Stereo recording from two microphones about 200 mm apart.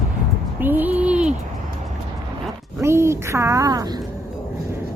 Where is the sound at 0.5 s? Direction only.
10° right (ahead or behind).